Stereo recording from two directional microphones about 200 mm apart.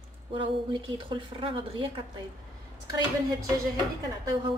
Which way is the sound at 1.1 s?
25° right (ahead or behind).